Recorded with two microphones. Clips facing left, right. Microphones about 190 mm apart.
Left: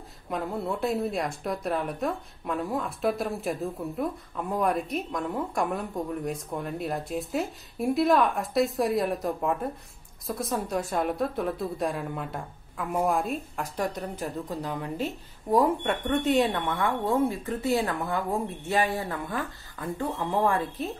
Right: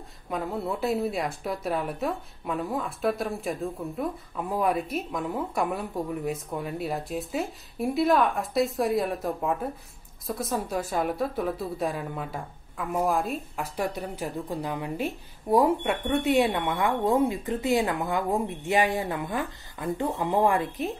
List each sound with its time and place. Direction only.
0.3 s a woman's voice: centre (ahead or behind); by 20.9 s 15° right (ahead or behind)